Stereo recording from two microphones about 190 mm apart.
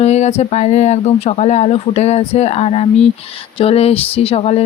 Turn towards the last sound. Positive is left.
turn(degrees=30)  # may be behind; listen again after turning